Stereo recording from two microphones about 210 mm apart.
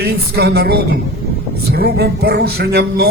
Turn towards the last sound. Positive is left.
turn(degrees=-50)  # may be behind; listen again after turning